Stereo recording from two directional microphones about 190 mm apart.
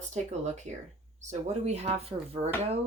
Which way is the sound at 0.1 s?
40° right (ahead or behind).